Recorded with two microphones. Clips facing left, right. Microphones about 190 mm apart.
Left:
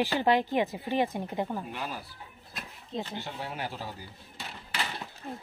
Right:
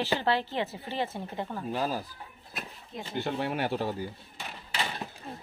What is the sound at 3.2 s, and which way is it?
Speech, 60° right (ahead or behind).